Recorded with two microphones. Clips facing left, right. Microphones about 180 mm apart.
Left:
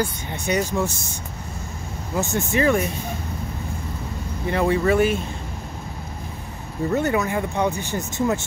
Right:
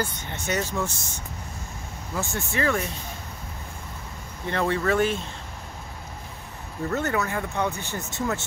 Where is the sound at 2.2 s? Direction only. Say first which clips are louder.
Left 6 dB; 20° left (ahead or behind).